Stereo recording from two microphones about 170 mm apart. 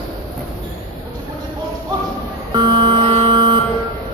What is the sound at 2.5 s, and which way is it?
Buzzer, 25° right (ahead or behind).